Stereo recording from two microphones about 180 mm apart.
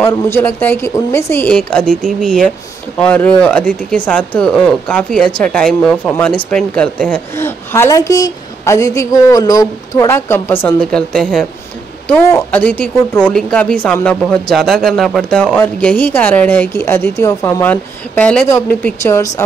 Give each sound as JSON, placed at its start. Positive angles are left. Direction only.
{"t": 0.0, "sound": "speech", "side_deg": 10}